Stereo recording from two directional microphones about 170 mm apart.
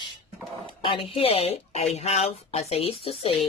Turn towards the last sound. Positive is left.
turn(degrees=35)  # may be behind; listen again after turning